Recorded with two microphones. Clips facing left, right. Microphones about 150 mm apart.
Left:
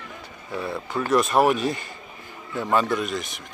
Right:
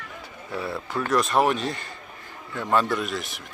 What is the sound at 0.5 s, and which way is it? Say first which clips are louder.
A man's voice: left 1 dB; 5° right (ahead or behind).